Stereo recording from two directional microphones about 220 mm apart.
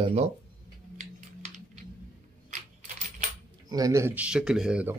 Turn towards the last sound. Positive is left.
turn(degrees=-5)  # may be behind; listen again after turning